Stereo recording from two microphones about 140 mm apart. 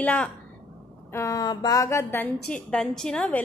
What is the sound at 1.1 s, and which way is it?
Speech, 20° left (ahead or behind).